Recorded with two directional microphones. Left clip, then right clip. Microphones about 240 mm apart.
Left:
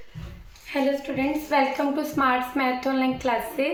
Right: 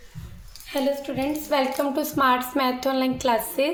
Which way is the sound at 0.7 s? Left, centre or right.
Right.